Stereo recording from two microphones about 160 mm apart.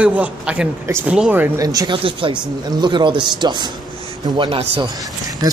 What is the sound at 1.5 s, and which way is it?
A man's voice, 25° right (ahead or behind).